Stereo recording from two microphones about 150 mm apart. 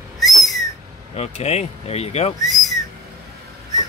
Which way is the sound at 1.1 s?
45° left (ahead or behind).